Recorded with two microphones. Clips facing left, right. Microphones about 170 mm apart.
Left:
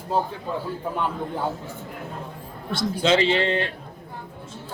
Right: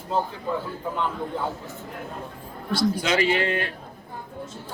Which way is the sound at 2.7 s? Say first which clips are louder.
Left 2 dB; 25° left (ahead or behind).